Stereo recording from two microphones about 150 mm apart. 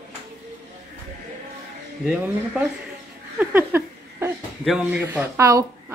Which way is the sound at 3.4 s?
15° right (ahead or behind).